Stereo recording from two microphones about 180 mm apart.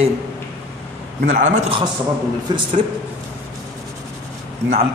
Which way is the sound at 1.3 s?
40° right (ahead or behind).